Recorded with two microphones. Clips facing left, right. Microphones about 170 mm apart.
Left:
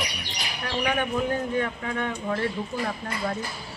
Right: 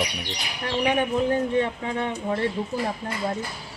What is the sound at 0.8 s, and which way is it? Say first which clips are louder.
A man's voice: right 4 dB; 25° right (ahead or behind).